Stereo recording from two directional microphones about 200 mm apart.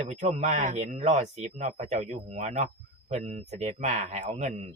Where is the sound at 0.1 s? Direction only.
35° right (ahead or behind).